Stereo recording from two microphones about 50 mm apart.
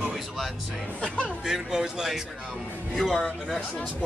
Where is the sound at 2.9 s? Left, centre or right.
Centre.